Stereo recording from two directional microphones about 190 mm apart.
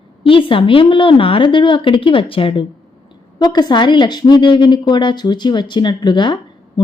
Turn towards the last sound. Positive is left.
turn(degrees=25)  # may be behind; listen again after turning